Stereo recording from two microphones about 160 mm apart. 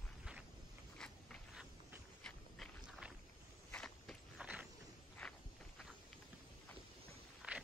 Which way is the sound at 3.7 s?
5° left (ahead or behind).